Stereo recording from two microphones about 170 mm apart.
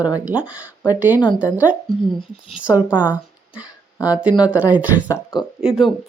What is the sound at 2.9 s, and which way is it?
Speech, 10° right (ahead or behind).